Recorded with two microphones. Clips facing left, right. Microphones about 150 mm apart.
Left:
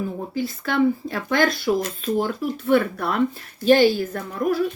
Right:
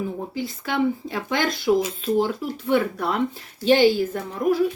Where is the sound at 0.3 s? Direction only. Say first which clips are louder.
Left 4 dB; 15° right (ahead or behind).